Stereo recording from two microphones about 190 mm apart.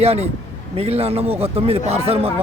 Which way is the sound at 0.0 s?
30° right (ahead or behind).